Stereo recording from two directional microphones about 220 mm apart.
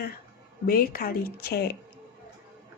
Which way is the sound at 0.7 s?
40° left (ahead or behind).